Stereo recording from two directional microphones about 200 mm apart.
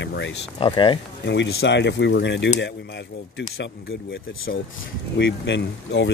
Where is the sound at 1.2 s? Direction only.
60° left (ahead or behind).